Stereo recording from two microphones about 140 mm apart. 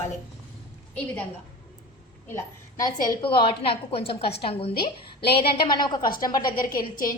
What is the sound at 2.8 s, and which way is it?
A woman's voice, 35° left (ahead or behind).